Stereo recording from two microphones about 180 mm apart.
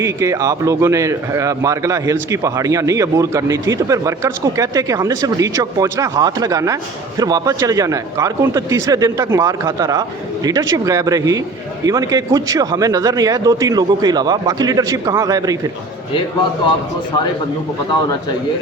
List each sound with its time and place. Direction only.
0.0 s a man's voice: 15° right (ahead or behind)